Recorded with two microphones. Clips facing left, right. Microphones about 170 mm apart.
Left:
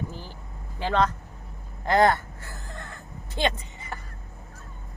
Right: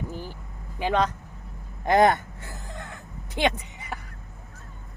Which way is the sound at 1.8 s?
20° right (ahead or behind).